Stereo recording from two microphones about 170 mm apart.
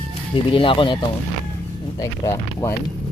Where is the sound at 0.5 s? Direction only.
30° left (ahead or behind).